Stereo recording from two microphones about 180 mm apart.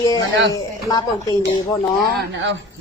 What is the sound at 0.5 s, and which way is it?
Speech, 20° left (ahead or behind).